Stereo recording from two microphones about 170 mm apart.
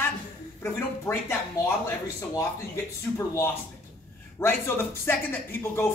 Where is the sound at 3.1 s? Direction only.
15° left (ahead or behind).